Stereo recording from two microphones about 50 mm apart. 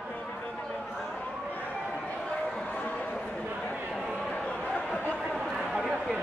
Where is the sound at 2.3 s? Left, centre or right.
Left.